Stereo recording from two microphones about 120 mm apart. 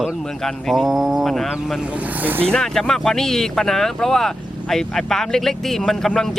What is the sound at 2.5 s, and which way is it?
Speech, 5° left (ahead or behind).